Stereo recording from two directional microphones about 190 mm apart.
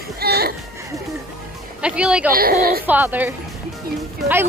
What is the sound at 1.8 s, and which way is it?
Speech, 5° right (ahead or behind).